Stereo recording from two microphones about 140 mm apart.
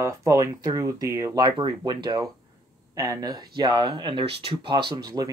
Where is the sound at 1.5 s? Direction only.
35° right (ahead or behind).